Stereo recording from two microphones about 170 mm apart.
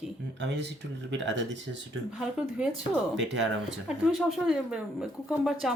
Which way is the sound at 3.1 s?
90° right.